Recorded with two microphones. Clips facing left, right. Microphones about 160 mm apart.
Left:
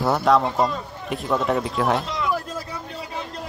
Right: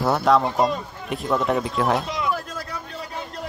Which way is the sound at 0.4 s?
15° right (ahead or behind).